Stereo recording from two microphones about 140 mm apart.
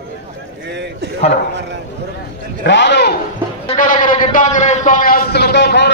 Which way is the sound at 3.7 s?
70° left (ahead or behind).